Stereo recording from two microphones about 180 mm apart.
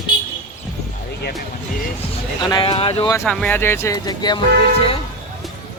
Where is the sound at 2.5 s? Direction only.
30° left (ahead or behind).